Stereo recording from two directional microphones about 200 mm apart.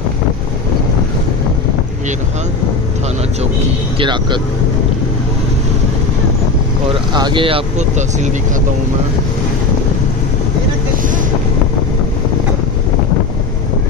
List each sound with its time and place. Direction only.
4.0 s speech: 25° right (ahead or behind)
7.2 s speech: 25° right (ahead or behind)